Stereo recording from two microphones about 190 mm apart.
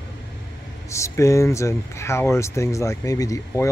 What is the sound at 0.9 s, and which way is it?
Speech, 15° left (ahead or behind).